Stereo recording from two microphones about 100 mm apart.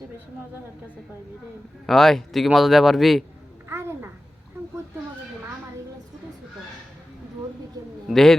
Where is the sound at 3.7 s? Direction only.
25° right (ahead or behind).